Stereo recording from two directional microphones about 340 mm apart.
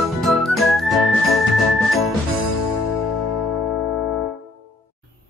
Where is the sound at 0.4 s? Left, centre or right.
Centre.